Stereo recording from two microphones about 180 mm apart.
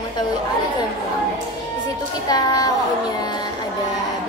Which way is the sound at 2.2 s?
20° left (ahead or behind).